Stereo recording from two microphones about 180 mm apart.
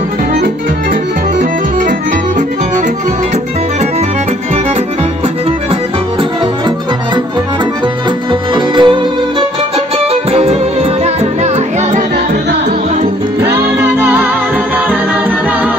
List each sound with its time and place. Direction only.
8.3 s music: 25° right (ahead or behind)
13.4 s music: 15° right (ahead or behind)